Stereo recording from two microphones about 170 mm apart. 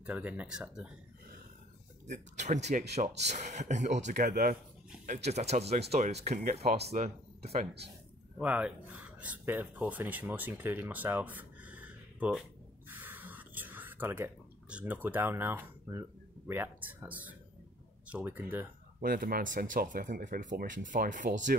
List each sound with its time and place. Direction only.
0.0 s speech: 5° right (ahead or behind)
2.0 s speech: 45° right (ahead or behind)
8.4 s speech: 10° right (ahead or behind)
12.8 s a sound: 10° right (ahead or behind)
18.0 s speech: 10° right (ahead or behind)
18.9 s speech: 60° right (ahead or behind)